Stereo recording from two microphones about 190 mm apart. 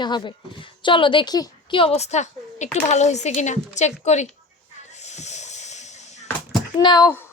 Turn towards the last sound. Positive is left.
turn(degrees=20)  # may be behind; listen again after turning